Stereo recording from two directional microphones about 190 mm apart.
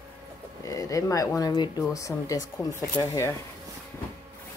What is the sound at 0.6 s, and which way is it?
Speech, 15° left (ahead or behind).